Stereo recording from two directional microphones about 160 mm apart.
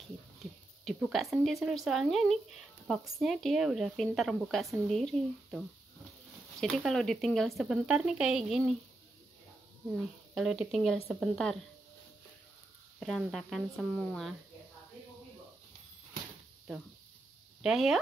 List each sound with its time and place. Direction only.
0.4 s speech: centre (ahead or behind)
6.6 s speech: centre (ahead or behind)
10.3 s speech: 5° right (ahead or behind)
13.0 s speech: centre (ahead or behind)
17.6 s speech: centre (ahead or behind)